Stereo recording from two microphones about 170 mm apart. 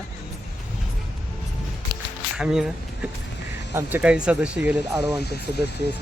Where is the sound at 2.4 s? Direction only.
5° right (ahead or behind).